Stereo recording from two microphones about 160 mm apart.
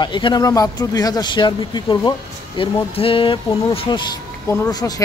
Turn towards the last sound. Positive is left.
turn(degrees=20)  # may be behind; listen again after turning